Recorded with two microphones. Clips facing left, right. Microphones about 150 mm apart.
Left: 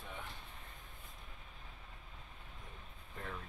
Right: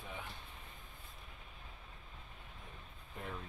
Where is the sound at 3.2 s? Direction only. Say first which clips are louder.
Right 1 dB; 10° right (ahead or behind).